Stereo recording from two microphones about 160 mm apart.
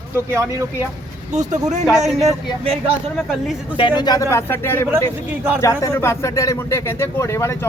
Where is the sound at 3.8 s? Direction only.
30° left (ahead or behind).